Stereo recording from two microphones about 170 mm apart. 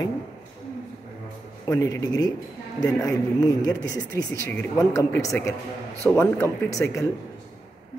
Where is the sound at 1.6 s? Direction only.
20° left (ahead or behind).